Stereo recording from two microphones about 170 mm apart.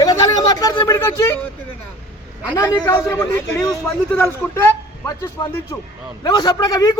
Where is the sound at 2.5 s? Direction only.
20° left (ahead or behind).